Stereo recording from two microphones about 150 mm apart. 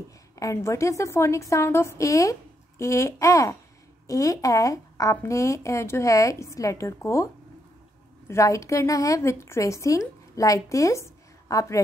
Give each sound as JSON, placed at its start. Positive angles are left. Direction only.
{"t": 0.4, "sound": "a woman's voice", "side_deg": 20}
{"t": 8.3, "sound": "a woman's voice", "side_deg": 20}